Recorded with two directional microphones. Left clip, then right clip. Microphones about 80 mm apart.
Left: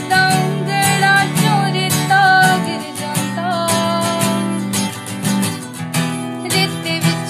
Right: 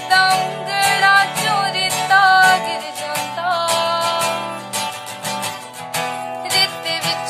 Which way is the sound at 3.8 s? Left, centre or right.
Right.